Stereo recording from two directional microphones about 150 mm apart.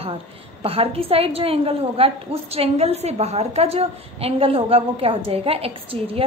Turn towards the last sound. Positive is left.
turn(degrees=-40)  # may be behind; listen again after turning